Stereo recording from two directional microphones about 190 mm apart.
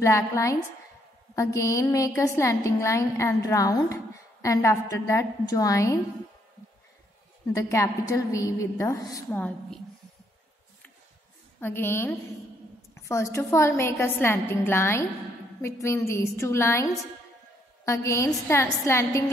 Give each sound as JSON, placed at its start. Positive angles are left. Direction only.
{"t": 0.0, "sound": "a woman's voice", "side_deg": 15}
{"t": 7.5, "sound": "a woman's voice", "side_deg": 15}
{"t": 9.3, "sound": "a woman's voice", "side_deg": 5}
{"t": 11.6, "sound": "a woman's voice", "side_deg": 10}